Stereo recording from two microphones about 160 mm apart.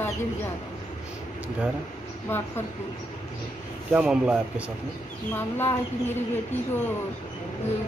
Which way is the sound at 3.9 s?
5° right (ahead or behind).